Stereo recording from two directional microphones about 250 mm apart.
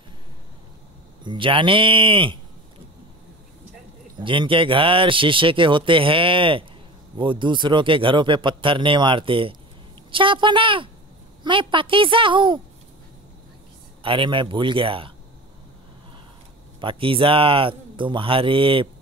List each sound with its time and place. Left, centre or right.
1.2 s speech: centre
4.2 s speech: centre
14.0 s speech: centre
16.8 s speech: right